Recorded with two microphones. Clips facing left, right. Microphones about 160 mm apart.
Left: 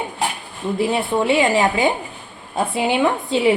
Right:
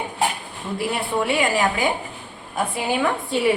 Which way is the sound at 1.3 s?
25° left (ahead or behind).